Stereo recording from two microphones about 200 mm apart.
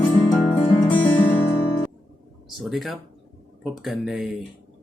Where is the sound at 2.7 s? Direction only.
Centre (ahead or behind).